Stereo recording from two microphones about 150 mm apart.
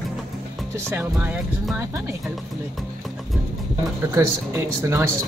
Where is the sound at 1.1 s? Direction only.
5° right (ahead or behind).